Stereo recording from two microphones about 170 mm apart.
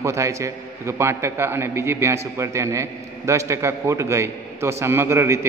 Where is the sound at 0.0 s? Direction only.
15° right (ahead or behind).